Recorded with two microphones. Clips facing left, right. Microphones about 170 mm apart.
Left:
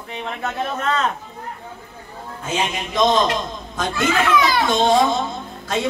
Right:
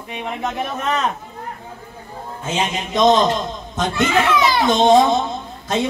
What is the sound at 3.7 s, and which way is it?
A child's voice, 20° right (ahead or behind).